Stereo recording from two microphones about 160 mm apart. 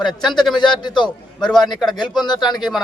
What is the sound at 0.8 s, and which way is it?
Speech, 30° left (ahead or behind).